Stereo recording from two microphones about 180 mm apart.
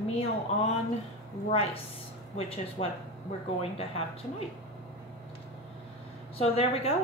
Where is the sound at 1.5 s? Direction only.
30° left (ahead or behind).